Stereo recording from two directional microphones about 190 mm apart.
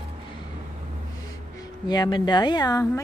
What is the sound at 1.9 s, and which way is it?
A woman's voice, 20° left (ahead or behind).